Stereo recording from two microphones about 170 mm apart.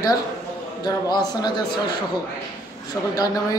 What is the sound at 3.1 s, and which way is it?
Speech, 20° left (ahead or behind).